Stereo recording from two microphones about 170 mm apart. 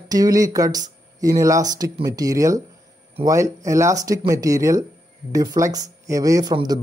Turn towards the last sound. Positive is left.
turn(degrees=-25)  # may be behind; listen again after turning